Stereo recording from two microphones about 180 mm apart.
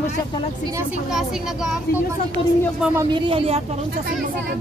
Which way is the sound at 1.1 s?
5° right (ahead or behind).